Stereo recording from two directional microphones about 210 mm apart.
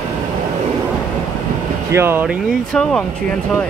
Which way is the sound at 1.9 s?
10° right (ahead or behind).